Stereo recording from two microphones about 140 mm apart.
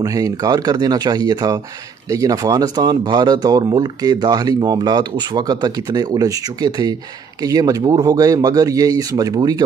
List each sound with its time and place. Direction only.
0.0 s speech: 25° right (ahead or behind)